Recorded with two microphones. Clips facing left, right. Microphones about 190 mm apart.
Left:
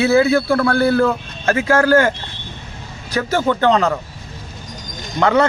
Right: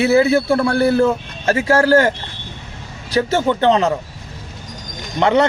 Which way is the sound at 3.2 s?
25° right (ahead or behind).